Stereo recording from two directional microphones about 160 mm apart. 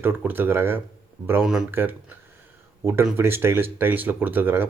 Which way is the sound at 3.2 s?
15° right (ahead or behind).